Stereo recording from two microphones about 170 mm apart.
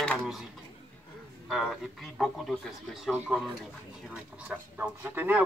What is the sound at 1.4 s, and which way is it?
A man's voice, centre (ahead or behind).